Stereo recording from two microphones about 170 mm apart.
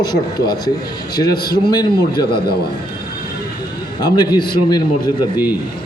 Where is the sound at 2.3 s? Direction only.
65° left (ahead or behind).